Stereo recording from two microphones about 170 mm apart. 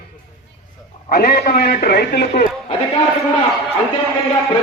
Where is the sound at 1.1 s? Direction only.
70° left (ahead or behind).